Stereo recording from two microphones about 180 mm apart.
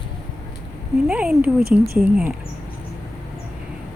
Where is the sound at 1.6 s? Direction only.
60° right (ahead or behind).